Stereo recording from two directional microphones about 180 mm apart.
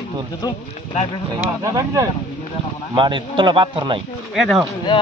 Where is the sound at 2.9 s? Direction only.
25° right (ahead or behind).